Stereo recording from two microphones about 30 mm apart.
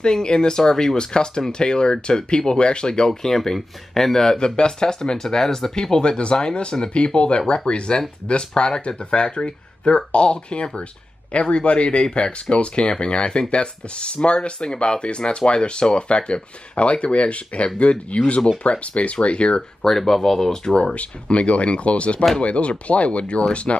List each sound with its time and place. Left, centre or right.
0.0 s speech: left
3.1 s a man's voice: centre
5.8 s speech: left
6.7 s a man's voice: centre
7.2 s speech: left
19.8 s a man's voice: centre
20.9 s speech: left